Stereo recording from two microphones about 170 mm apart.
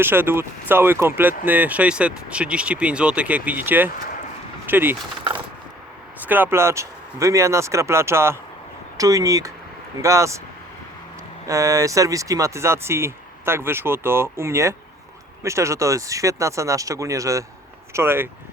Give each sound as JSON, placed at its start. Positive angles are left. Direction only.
{"t": 0.0, "sound": "speech", "side_deg": -15}
{"t": 6.2, "sound": "speech", "side_deg": -10}
{"t": 11.4, "sound": "speech", "side_deg": -20}